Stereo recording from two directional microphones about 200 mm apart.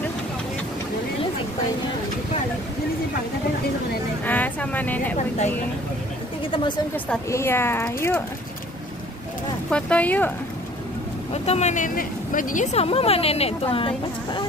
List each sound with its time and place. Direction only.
4.3 s speech: 10° left (ahead or behind)
7.1 s speech: 15° left (ahead or behind)
9.7 s speech: 5° left (ahead or behind)
11.3 s speech: 30° left (ahead or behind)